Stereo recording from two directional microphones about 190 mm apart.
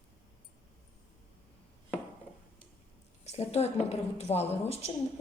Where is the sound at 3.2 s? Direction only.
35° left (ahead or behind).